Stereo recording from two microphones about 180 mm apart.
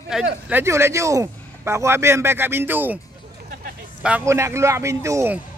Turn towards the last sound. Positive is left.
turn(degrees=-15)  # may be behind; listen again after turning